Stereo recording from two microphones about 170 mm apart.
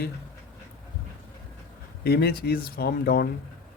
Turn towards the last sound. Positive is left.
turn(degrees=70)  # may be behind; listen again after turning